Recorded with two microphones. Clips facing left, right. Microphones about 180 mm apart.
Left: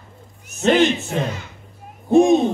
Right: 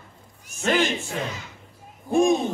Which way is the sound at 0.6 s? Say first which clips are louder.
Left 7 dB; 20° left (ahead or behind).